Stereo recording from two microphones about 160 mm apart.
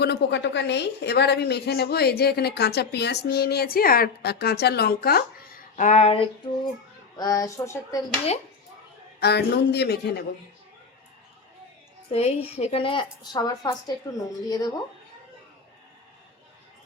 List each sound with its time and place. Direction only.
0.0 s a woman's voice: 90° left; by 6.2 s 40° left (ahead or behind)
7.2 s a woman's voice: 20° left (ahead or behind)
9.2 s a woman's voice: 90° left
12.1 s a woman's voice: 40° left (ahead or behind); by 14.8 s 25° left (ahead or behind)